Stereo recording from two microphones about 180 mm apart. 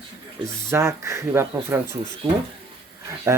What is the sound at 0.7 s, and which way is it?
Speech, 15° right (ahead or behind).